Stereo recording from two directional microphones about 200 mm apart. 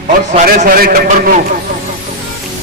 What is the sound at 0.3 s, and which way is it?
Speech, 40° right (ahead or behind).